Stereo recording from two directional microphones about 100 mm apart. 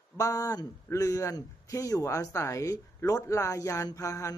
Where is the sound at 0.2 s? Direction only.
35° left (ahead or behind).